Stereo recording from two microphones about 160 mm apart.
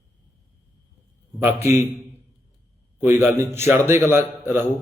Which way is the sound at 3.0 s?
15° right (ahead or behind).